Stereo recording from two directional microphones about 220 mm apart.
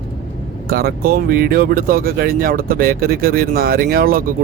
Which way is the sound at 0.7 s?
45° right (ahead or behind).